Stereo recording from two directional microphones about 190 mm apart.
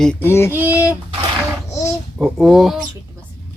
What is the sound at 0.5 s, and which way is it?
Speech, 10° right (ahead or behind).